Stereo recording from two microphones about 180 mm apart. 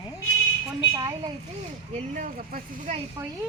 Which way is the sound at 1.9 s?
40° right (ahead or behind).